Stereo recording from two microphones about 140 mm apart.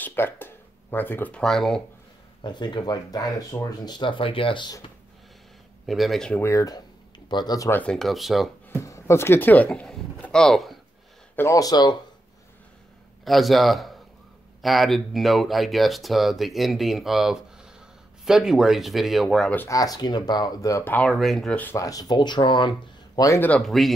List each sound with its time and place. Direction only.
0.0 s speech: 15° left (ahead or behind)
2.4 s speech: 30° left (ahead or behind)
5.9 s speech: centre (ahead or behind)
6.4 s speech: 25° left (ahead or behind)
7.8 s speech: 5° left (ahead or behind)
8.6 s speech: 20° left (ahead or behind); by 10.8 s centre (ahead or behind)
11.3 s speech: 20° left (ahead or behind)
13.2 s a man's voice: centre (ahead or behind)
19.7 s speech: 25° left (ahead or behind)
21.1 s speech: centre (ahead or behind)
21.7 s speech: 25° left (ahead or behind)
23.5 s speech: centre (ahead or behind)